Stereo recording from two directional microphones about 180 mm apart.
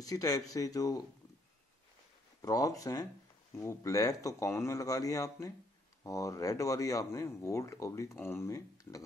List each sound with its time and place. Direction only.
0.0 s speech: 20° left (ahead or behind)
2.4 s speech: 20° left (ahead or behind)